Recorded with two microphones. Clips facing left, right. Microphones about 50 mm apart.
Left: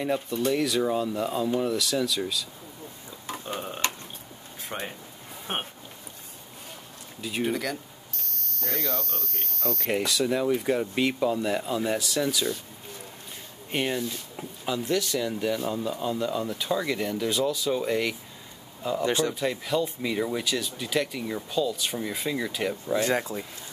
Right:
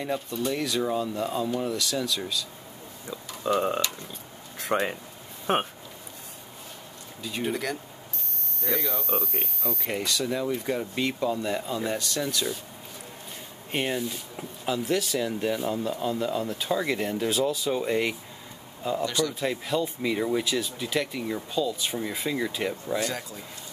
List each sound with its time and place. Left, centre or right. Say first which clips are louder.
0.0 s speech: left 3 dB; centre
3.4 s speech: right 12 dB; right
4.6 s a sound: right 9 dB; right
5.5 s speech: right 7 dB; right
7.2 s speech: left 3 dB; centre
7.4 s speech: even; centre
8.5 s speech: right 1 dB; centre
9.8 s speech: left 3 dB; centre
13.7 s speech: even; centre
19.0 s speech: left 4 dB; left
19.4 s speech: left 1 dB; centre
22.9 s speech: left 5 dB; left